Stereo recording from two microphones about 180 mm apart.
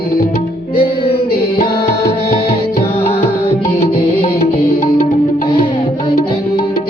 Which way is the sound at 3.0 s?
30° left (ahead or behind).